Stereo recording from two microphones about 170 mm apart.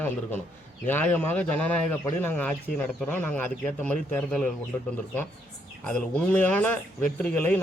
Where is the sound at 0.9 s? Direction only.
10° left (ahead or behind).